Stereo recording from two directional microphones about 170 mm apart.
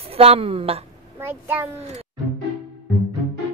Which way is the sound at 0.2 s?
35° right (ahead or behind).